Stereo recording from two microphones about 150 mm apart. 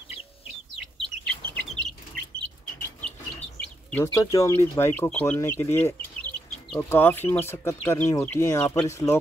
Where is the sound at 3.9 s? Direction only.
20° left (ahead or behind).